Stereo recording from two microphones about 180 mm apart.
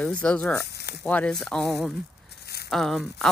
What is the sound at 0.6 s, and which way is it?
Speech, 65° left (ahead or behind).